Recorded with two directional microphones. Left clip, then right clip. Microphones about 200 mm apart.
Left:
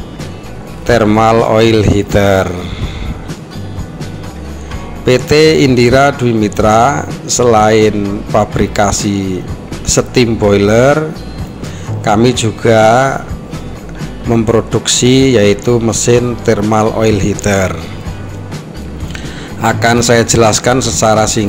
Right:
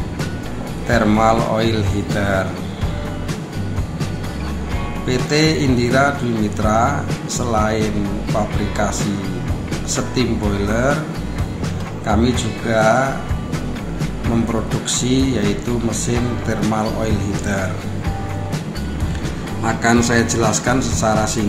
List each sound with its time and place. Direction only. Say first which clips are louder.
0.8 s speech: left 6 dB; 40° left (ahead or behind)
5.0 s speech: left 10 dB; 40° left (ahead or behind)
12.0 s speech: left 9 dB; 40° left (ahead or behind)
14.9 s speech: left 10 dB; 40° left (ahead or behind)
19.6 s speech: left 6 dB; 40° left (ahead or behind)